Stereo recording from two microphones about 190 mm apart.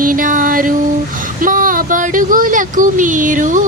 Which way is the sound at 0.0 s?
45° right (ahead or behind).